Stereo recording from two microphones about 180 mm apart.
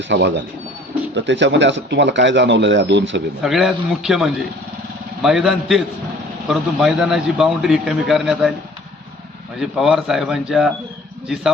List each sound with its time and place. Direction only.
0.1 s speech: 70° right (ahead or behind)
1.1 s speech: 80° right
3.4 s a man's voice: centre (ahead or behind)
9.6 s a man's voice: centre (ahead or behind)